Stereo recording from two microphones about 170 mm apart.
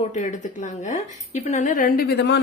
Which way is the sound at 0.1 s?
45° left (ahead or behind).